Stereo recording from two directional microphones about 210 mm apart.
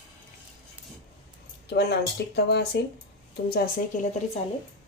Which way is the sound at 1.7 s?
50° left (ahead or behind).